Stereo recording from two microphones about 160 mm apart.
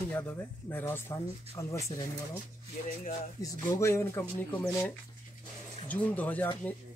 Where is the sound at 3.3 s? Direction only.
20° left (ahead or behind).